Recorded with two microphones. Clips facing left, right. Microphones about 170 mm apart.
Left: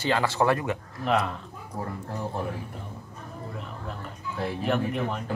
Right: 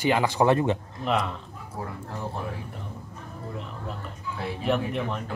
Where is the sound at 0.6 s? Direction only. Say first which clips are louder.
Right 5 dB; 25° right (ahead or behind).